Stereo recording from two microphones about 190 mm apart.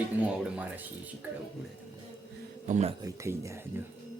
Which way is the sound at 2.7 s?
35° right (ahead or behind).